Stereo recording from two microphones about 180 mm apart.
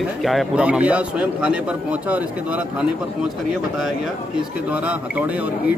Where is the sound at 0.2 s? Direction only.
Centre (ahead or behind).